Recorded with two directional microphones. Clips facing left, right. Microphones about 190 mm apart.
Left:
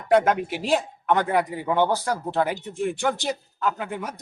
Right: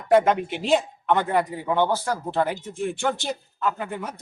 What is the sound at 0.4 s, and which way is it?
A man's voice, 5° left (ahead or behind).